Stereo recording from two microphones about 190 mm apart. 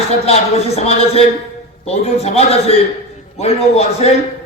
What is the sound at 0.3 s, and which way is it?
Music, 35° left (ahead or behind).